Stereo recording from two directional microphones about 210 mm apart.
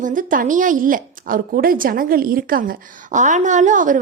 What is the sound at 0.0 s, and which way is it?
A woman's voice, 40° right (ahead or behind).